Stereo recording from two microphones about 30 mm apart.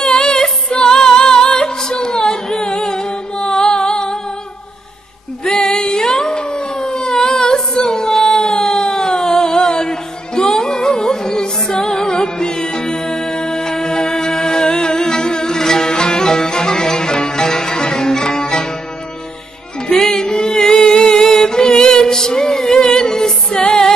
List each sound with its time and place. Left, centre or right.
0.1 s music: centre
5.6 s a sound: left
8.8 s music: left
19.9 s music: centre